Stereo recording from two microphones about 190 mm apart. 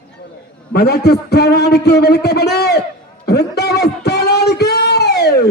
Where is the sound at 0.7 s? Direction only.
55° left (ahead or behind).